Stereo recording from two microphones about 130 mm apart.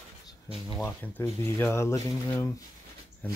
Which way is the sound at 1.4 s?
20° left (ahead or behind).